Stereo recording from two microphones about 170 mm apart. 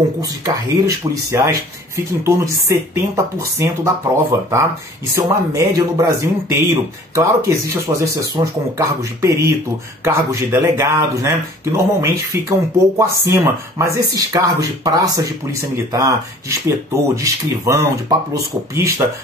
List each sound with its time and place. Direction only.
0.2 s speech: 20° right (ahead or behind)